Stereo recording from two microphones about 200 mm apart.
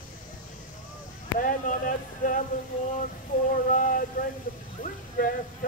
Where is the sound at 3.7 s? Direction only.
40° left (ahead or behind).